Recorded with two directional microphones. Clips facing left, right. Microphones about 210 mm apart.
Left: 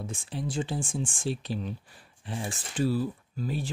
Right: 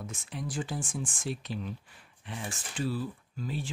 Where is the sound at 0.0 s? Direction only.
30° left (ahead or behind).